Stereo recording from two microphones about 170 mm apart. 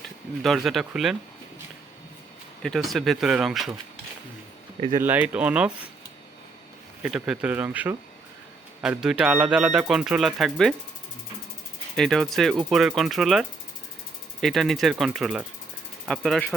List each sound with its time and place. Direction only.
0.4 s speech: centre (ahead or behind)
2.6 s speech: centre (ahead or behind)
4.9 s speech: 10° right (ahead or behind)
7.0 s speech: 5° right (ahead or behind)
11.9 s speech: centre (ahead or behind)
14.4 s speech: centre (ahead or behind)